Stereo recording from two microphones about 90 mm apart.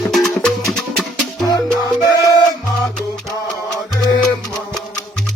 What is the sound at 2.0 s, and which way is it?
Music, 45° left (ahead or behind).